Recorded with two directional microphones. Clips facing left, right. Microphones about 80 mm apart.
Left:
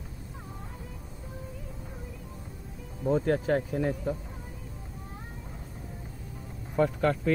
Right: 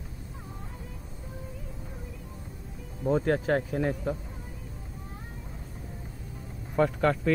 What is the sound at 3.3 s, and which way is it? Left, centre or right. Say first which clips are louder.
Speech: even; right.